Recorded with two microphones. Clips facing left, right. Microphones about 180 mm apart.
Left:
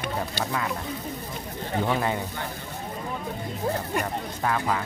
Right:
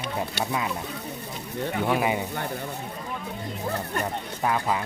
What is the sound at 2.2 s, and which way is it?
Speech, 60° right (ahead or behind).